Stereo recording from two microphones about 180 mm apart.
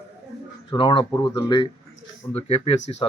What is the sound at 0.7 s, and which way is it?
Speech, 25° left (ahead or behind).